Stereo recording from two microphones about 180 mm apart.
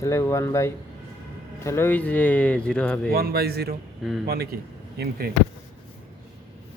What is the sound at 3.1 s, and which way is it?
Speech, 60° right (ahead or behind).